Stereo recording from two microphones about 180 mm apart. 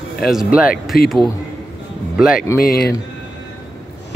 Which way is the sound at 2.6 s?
60° left (ahead or behind).